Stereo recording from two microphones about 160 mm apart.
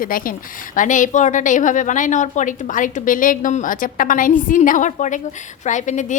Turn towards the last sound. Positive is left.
turn(degrees=50)  # may be behind; listen again after turning